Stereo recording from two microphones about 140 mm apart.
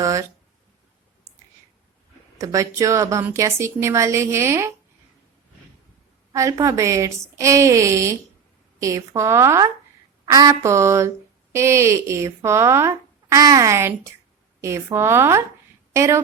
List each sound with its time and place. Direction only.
0.0 s speech: 25° right (ahead or behind)
2.4 s a woman's voice: 25° right (ahead or behind)
6.3 s a woman's voice: 20° right (ahead or behind)